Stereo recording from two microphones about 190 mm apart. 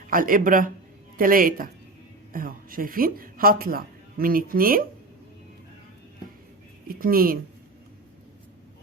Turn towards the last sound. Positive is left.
turn(degrees=-50)  # may be behind; listen again after turning